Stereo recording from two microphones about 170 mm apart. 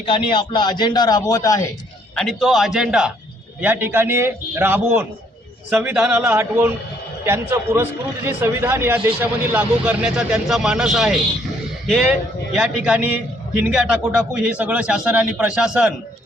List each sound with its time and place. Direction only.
0.0 s a man's voice: 30° left (ahead or behind)
2.1 s a man's voice: centre (ahead or behind)
12.5 s a man's voice: 5° right (ahead or behind)